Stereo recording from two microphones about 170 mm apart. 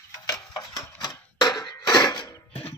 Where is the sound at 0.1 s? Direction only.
20° left (ahead or behind).